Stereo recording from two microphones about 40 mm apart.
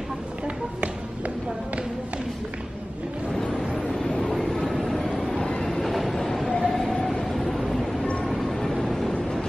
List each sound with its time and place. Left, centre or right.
3.3 s a sound: centre
4.2 s vehicle: centre
5.2 s train: centre
7.2 s vehicle: centre
8.5 s vehicle: centre